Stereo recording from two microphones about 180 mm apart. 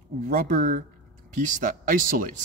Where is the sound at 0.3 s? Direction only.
50° right (ahead or behind).